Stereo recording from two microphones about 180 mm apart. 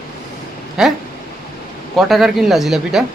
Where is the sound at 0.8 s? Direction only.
5° right (ahead or behind).